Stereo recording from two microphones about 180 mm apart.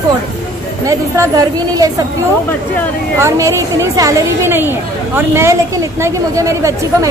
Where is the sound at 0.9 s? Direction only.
20° right (ahead or behind).